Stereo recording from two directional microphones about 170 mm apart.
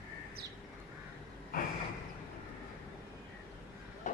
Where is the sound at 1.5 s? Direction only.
60° left (ahead or behind).